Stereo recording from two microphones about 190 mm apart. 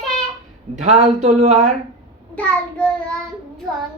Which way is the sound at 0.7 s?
40° right (ahead or behind).